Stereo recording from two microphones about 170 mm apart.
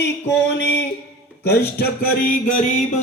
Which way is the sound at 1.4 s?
70° left (ahead or behind).